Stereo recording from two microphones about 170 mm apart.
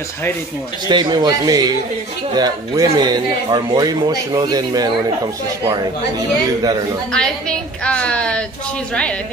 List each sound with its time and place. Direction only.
0.8 s speech: 25° right (ahead or behind)
7.1 s a woman's voice: 5° left (ahead or behind)